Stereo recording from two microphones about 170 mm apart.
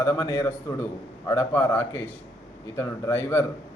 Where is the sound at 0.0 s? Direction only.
20° left (ahead or behind).